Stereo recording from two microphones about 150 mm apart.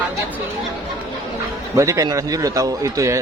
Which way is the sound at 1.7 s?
20° right (ahead or behind).